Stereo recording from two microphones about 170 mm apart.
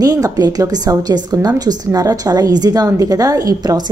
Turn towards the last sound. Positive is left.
turn(degrees=-25)  # may be behind; listen again after turning